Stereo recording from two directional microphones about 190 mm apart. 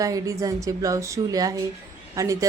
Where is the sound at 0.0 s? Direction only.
15° right (ahead or behind).